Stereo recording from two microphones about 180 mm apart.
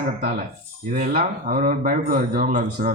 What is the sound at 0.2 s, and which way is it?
A man's voice, 55° right (ahead or behind).